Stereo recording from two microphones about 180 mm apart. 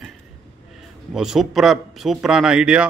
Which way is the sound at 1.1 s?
5° right (ahead or behind).